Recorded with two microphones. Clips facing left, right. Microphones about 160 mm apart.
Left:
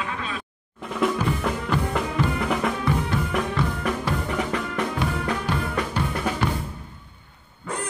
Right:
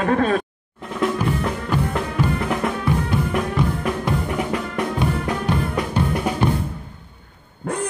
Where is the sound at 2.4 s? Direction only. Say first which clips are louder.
Right 2 dB; centre (ahead or behind).